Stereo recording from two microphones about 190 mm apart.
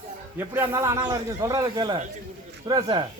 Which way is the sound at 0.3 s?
10° right (ahead or behind).